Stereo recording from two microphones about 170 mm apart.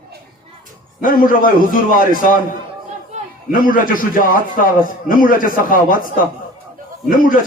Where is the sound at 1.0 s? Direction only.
55° left (ahead or behind).